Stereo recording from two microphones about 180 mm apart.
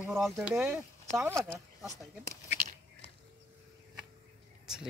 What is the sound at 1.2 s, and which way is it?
Speech, 15° right (ahead or behind).